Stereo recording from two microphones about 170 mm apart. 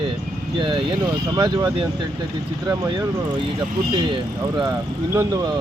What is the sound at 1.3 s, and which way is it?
Speech, 30° right (ahead or behind).